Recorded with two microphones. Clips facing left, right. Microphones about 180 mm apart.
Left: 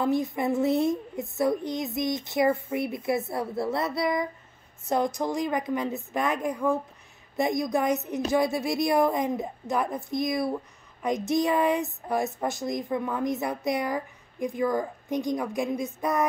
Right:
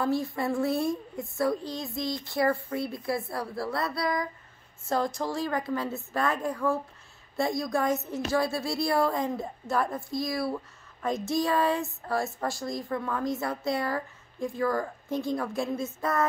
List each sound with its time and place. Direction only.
0.0 s a woman's voice: 20° left (ahead or behind)